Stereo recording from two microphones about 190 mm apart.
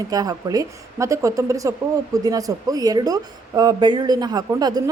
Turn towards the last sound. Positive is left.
turn(degrees=-20)  # may be behind; listen again after turning